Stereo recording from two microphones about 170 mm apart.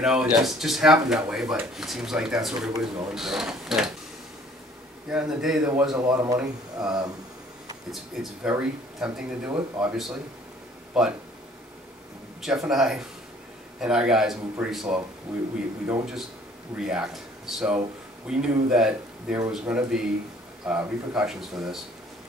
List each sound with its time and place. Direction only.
0.0 s speech: 5° right (ahead or behind)
5.1 s speech: 5° right (ahead or behind)
12.4 s speech: centre (ahead or behind)
16.7 s speech: 5° right (ahead or behind)